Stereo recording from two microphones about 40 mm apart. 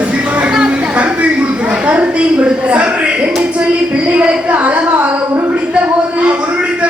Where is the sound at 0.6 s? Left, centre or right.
Right.